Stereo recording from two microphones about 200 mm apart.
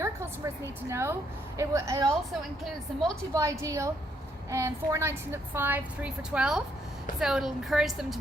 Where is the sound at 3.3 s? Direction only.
15° right (ahead or behind).